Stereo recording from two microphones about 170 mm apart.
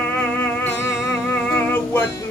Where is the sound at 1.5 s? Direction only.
15° left (ahead or behind).